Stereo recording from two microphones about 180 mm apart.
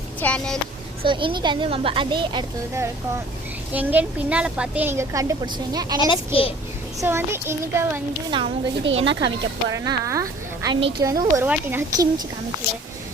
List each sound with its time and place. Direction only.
0.2 s speech: 5° left (ahead or behind)
1.0 s speech: 25° right (ahead or behind)
3.7 s a woman's voice: 10° right (ahead or behind)
6.0 s a child's voice: 30° left (ahead or behind)
7.0 s a woman's voice: 15° right (ahead or behind)
8.3 s speech: 25° right (ahead or behind)
8.8 s speech: 90° right
9.7 s a woman's voice: 15° right (ahead or behind)